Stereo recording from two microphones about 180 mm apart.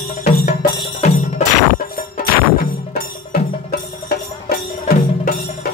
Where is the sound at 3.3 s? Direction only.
55° left (ahead or behind).